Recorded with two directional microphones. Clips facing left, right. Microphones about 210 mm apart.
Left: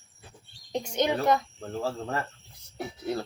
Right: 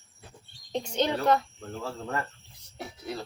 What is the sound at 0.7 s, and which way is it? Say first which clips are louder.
Speech: left 1 dB; 15° left (ahead or behind).